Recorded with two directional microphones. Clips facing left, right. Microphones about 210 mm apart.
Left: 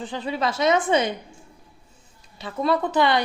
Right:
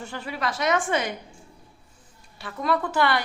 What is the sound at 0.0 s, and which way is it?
A woman's voice, 20° left (ahead or behind).